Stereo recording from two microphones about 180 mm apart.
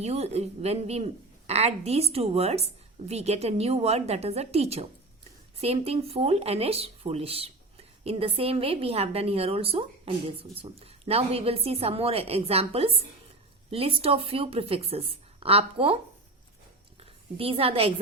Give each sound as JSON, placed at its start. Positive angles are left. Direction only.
{"t": 0.0, "sound": "speech", "side_deg": -35}
{"t": 17.3, "sound": "speech", "side_deg": -30}